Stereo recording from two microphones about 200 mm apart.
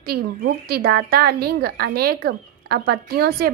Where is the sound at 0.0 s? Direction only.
50° right (ahead or behind).